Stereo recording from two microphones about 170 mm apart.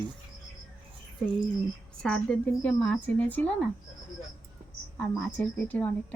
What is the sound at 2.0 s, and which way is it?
A woman's voice, 5° left (ahead or behind).